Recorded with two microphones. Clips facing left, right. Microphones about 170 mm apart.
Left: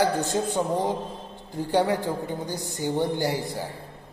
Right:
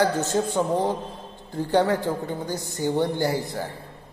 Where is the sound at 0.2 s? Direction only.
15° left (ahead or behind).